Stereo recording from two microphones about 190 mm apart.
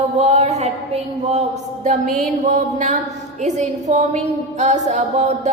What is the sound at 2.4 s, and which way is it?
A woman's voice, 40° right (ahead or behind).